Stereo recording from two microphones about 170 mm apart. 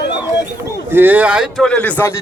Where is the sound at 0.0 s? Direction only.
90° left.